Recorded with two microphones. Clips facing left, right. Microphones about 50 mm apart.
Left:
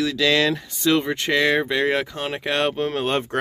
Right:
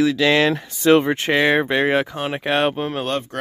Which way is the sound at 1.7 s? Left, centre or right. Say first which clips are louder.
Right 2 dB; right.